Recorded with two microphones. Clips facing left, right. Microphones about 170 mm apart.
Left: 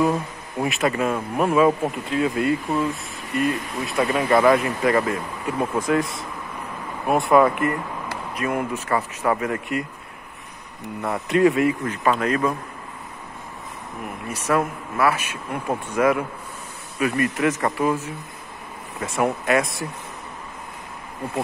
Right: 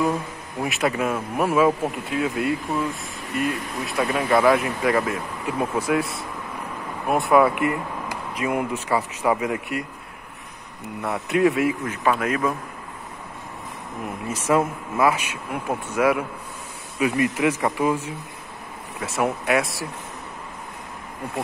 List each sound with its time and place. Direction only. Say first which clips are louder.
0.0 s speech: left 2 dB; centre (ahead or behind)
7.1 s speech: left 1 dB; centre (ahead or behind)
11.0 s speech: left 2 dB; 5° right (ahead or behind)
14.5 s speech: right 1 dB; 15° right (ahead or behind)